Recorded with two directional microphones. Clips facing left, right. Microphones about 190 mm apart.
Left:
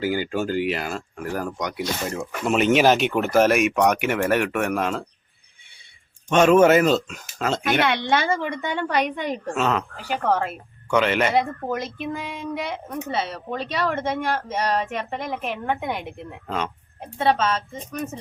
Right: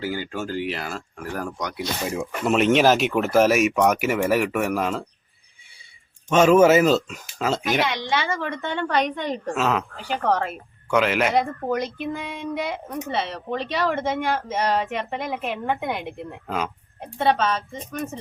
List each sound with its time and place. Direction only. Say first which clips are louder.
0.0 s a woman's voice: left 4 dB; 10° left (ahead or behind)
6.3 s speech: even; 5° right (ahead or behind)
7.6 s speech: left 2 dB; 60° left (ahead or behind)
8.4 s a woman's voice: left 1 dB; 15° left (ahead or behind)
9.5 s speech: even; centre (ahead or behind)